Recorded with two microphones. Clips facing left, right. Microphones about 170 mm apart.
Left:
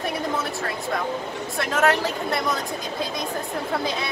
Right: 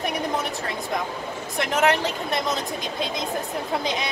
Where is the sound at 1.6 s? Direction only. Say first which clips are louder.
Even; 20° right (ahead or behind).